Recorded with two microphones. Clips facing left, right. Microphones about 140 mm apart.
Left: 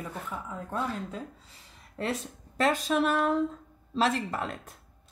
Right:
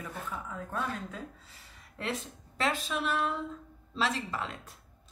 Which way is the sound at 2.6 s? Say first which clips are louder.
Left 6 dB; 40° left (ahead or behind).